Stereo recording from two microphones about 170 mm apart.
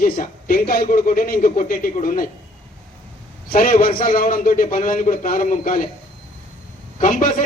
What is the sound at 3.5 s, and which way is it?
A man's voice, 55° left (ahead or behind).